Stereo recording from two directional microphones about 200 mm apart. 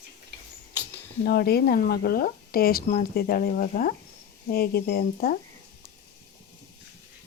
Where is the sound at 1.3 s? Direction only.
55° left (ahead or behind).